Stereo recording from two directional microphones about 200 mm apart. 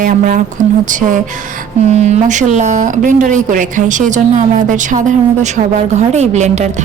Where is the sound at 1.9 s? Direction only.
35° right (ahead or behind).